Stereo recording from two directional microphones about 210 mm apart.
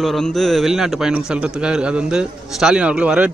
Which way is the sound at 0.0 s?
Centre (ahead or behind).